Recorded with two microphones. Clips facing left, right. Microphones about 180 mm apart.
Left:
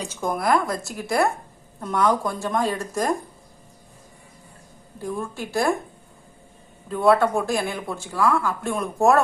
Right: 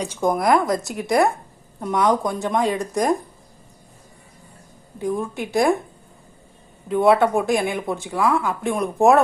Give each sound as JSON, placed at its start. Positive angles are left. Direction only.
{"t": 0.1, "sound": "speech", "side_deg": -15}
{"t": 0.3, "sound": "speech", "side_deg": 0}
{"t": 0.9, "sound": "a woman's voice", "side_deg": -70}
{"t": 1.8, "sound": "speech", "side_deg": -20}
{"t": 5.0, "sound": "speech", "side_deg": -20}
{"t": 6.9, "sound": "speech", "side_deg": -20}